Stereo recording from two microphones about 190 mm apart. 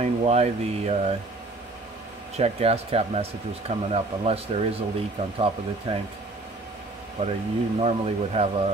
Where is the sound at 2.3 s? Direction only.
35° right (ahead or behind).